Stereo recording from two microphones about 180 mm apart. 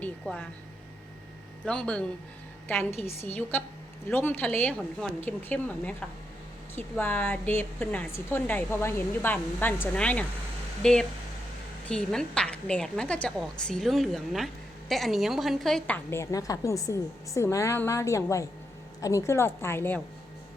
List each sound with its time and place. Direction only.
0.0 s a sound: 5° left (ahead or behind)
1.6 s a woman's voice: 5° left (ahead or behind)
3.2 s a woman's voice: 10° left (ahead or behind)
16.0 s a woman's voice: 15° left (ahead or behind)